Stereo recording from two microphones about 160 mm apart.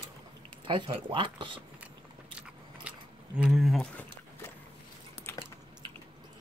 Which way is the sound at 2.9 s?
10° right (ahead or behind).